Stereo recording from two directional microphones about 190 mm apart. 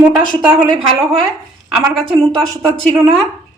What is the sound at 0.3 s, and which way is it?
Speech, 25° right (ahead or behind).